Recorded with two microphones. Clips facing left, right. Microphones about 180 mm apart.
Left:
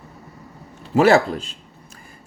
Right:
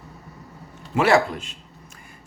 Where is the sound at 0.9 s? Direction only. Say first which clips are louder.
Left 4 dB; 40° left (ahead or behind).